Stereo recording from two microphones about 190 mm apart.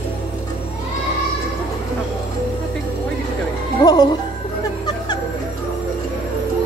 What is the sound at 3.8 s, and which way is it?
Music, 20° left (ahead or behind).